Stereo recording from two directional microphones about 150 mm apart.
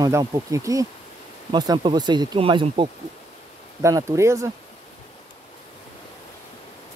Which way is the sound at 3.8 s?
20° right (ahead or behind).